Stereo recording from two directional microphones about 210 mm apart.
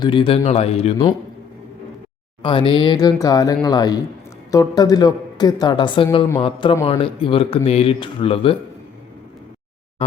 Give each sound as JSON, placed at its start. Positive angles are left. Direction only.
{"t": 0.0, "sound": "speech", "side_deg": 25}
{"t": 2.4, "sound": "speech", "side_deg": 25}